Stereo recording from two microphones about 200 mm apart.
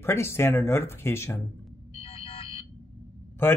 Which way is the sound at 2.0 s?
25° left (ahead or behind).